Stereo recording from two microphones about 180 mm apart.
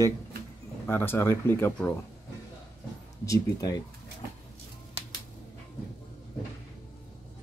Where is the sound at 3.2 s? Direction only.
20° left (ahead or behind).